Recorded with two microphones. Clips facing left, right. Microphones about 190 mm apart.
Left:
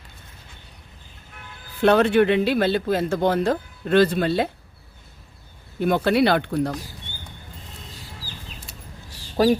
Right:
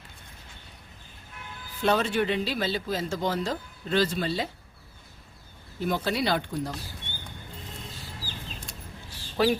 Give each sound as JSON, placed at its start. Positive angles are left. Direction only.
{"t": 1.8, "sound": "speech", "side_deg": 60}
{"t": 5.8, "sound": "speech", "side_deg": 60}
{"t": 9.4, "sound": "speech", "side_deg": 40}